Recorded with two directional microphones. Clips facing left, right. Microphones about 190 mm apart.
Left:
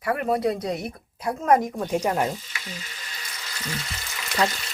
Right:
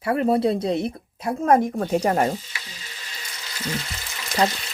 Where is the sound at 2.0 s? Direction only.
40° right (ahead or behind).